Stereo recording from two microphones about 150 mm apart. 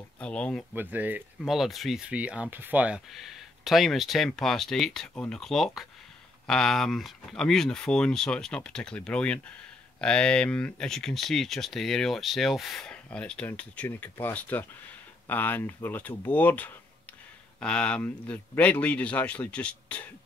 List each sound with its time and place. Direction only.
0.2 s speech: 5° left (ahead or behind)
0.7 s speech: 10° right (ahead or behind)
1.4 s speech: centre (ahead or behind)